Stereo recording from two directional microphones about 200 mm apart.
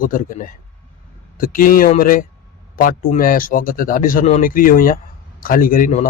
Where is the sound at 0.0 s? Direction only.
45° left (ahead or behind).